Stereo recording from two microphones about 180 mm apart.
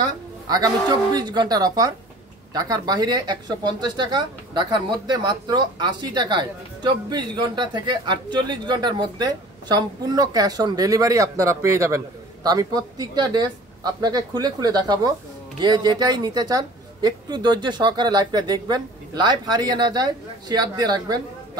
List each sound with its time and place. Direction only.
0.0 s speech: 20° right (ahead or behind)